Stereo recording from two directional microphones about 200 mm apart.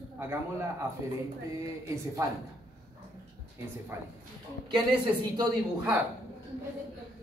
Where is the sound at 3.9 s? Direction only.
10° right (ahead or behind).